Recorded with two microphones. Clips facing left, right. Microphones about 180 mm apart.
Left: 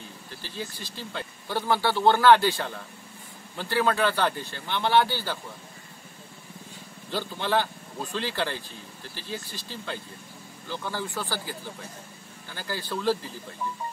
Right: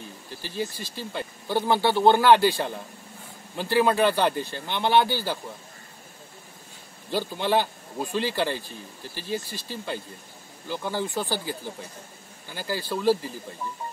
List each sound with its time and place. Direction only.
0.4 s speech: 15° right (ahead or behind)
7.1 s speech: 15° right (ahead or behind)
10.7 s speech: 15° right (ahead or behind)